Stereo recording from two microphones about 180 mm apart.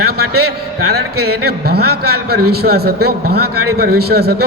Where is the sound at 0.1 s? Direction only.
60° right (ahead or behind).